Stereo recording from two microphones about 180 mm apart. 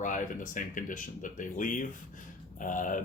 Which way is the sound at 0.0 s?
45° left (ahead or behind).